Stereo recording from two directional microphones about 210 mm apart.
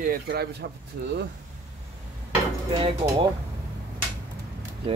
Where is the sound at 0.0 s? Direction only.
45° right (ahead or behind).